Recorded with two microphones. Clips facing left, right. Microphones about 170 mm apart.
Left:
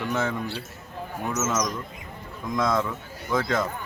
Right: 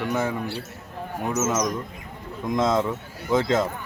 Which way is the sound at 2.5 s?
25° right (ahead or behind).